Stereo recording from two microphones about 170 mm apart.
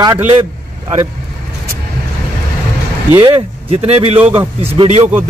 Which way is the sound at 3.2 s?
35° right (ahead or behind).